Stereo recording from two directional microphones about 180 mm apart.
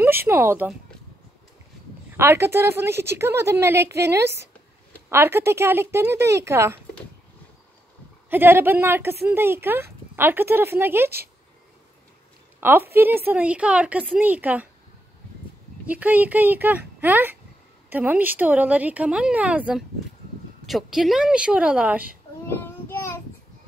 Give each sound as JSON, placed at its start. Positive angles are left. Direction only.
{"t": 0.0, "sound": "speech", "side_deg": -10}
{"t": 2.1, "sound": "a woman's voice", "side_deg": -15}
{"t": 8.3, "sound": "a woman's voice", "side_deg": -10}
{"t": 12.5, "sound": "a woman's voice", "side_deg": -10}
{"t": 15.9, "sound": "a woman's voice", "side_deg": -10}
{"t": 22.5, "sound": "child singing", "side_deg": 10}